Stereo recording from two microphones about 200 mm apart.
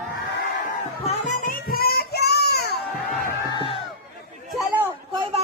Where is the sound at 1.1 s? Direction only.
35° left (ahead or behind); by 2.8 s 55° left (ahead or behind).